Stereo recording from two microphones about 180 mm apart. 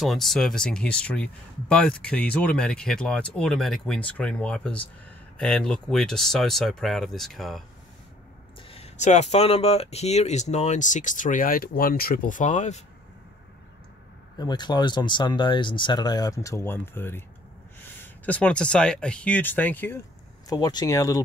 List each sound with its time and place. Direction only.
0.0 s speech: centre (ahead or behind)
8.6 s speech: 35° left (ahead or behind)
14.4 s speech: 25° left (ahead or behind)
18.2 s speech: 5° left (ahead or behind)
20.4 s speech: 20° left (ahead or behind)